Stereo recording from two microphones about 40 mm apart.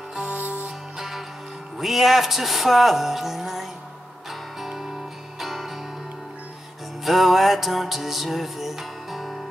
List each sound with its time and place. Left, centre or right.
0.3 s music: right
0.9 s music: centre
1.8 s speech: centre
4.3 s music: centre
7.1 s music: centre